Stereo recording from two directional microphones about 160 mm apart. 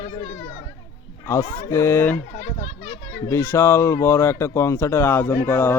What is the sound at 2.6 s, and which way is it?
Speech, 35° left (ahead or behind).